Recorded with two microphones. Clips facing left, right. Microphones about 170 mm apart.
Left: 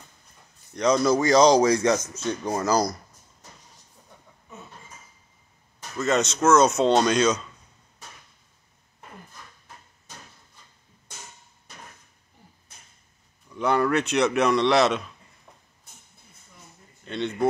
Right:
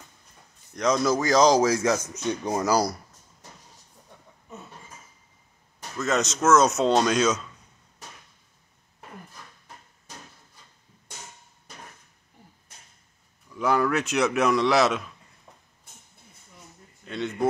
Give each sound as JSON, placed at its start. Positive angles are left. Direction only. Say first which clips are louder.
{"t": 0.7, "sound": "speech", "louder": "left 2 dB", "side_deg": 0}
{"t": 5.9, "sound": "speech", "louder": "left 2 dB", "side_deg": 0}
{"t": 13.5, "sound": "speech", "louder": "left 1 dB", "side_deg": 0}
{"t": 17.0, "sound": "speech", "louder": "left 1 dB", "side_deg": 0}